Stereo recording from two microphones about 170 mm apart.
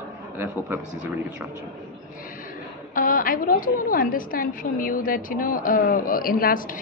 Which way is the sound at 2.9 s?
55° left (ahead or behind).